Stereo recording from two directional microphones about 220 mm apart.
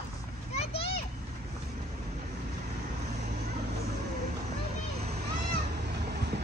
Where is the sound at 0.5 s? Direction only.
25° left (ahead or behind).